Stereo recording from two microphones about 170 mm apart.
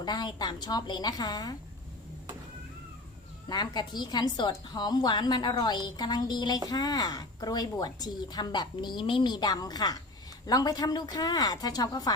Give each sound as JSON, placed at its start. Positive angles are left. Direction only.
{"t": 0.0, "sound": "a woman's voice", "side_deg": 25}
{"t": 3.5, "sound": "a woman's voice", "side_deg": 25}